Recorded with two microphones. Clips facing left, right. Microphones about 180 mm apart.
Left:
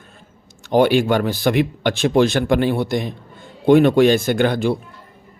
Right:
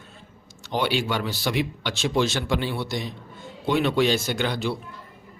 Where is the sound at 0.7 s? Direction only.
50° left (ahead or behind).